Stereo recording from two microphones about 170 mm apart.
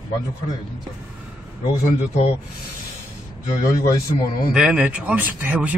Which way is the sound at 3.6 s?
20° left (ahead or behind).